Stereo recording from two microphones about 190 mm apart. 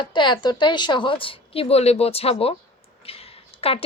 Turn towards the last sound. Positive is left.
turn(degrees=30)  # may be behind; listen again after turning